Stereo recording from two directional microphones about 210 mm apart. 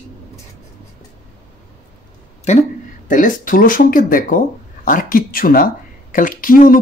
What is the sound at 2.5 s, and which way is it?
A woman's voice, 35° left (ahead or behind).